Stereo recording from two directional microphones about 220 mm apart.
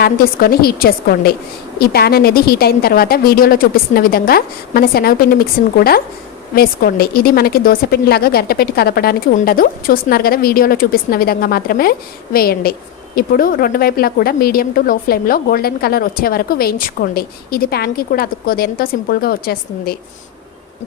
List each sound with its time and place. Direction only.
0.0 s a woman's voice: 45° left (ahead or behind)